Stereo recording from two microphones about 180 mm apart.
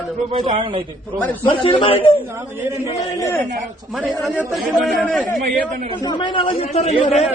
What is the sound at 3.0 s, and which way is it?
Speech, 20° left (ahead or behind).